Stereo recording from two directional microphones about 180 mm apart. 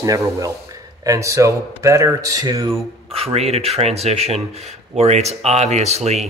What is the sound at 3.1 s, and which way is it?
Speech, 35° right (ahead or behind).